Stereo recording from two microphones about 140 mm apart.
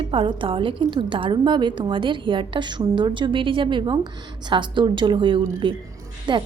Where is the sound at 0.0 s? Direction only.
40° right (ahead or behind).